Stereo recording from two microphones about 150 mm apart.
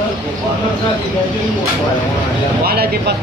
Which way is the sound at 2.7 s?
90° right.